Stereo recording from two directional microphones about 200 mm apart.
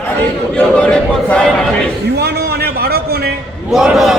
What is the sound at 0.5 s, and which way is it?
A man's voice, 5° left (ahead or behind).